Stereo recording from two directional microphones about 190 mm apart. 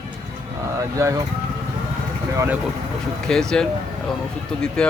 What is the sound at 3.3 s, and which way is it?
Speech, 5° left (ahead or behind).